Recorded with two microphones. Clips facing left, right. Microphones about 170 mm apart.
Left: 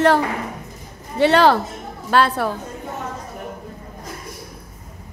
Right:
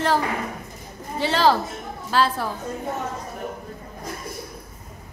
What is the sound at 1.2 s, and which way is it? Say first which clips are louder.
A woman's voice: left 5 dB; 65° left (ahead or behind).